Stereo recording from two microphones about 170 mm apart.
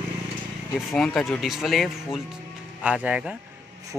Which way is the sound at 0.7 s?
Centre (ahead or behind).